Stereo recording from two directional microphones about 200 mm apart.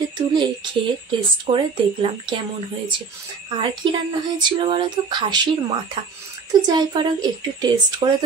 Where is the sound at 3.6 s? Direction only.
25° right (ahead or behind).